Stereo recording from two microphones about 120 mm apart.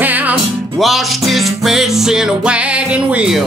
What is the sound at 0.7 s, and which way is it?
Music, centre (ahead or behind).